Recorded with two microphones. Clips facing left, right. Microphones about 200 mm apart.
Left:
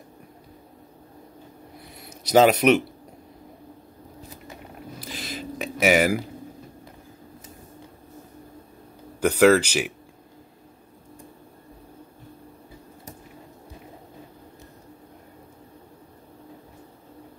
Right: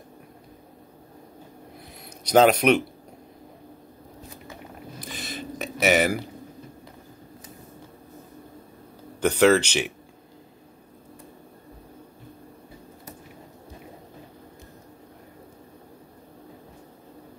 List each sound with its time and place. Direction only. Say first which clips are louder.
2.0 s speech: left 1 dB; 5° left (ahead or behind)
4.9 s a sound: left 1 dB; 5° left (ahead or behind)
9.2 s speech: left 2 dB; 10° left (ahead or behind)